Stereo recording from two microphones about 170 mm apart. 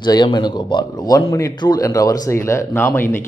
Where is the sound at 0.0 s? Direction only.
25° left (ahead or behind).